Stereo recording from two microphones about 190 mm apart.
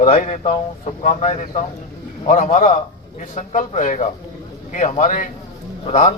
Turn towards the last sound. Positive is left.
turn(degrees=35)  # may be behind; listen again after turning